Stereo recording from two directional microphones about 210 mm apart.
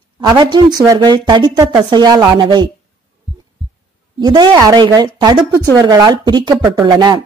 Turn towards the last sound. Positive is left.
turn(degrees=-20)  # may be behind; listen again after turning